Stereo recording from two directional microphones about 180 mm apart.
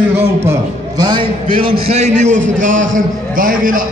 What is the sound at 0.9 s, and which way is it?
A man's voice, 25° right (ahead or behind).